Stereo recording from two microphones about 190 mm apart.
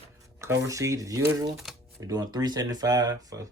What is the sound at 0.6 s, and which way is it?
Speech, 15° right (ahead or behind).